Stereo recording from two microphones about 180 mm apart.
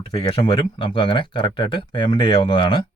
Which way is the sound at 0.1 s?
30° left (ahead or behind).